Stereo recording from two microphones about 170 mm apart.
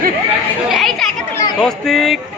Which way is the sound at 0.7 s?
Centre (ahead or behind).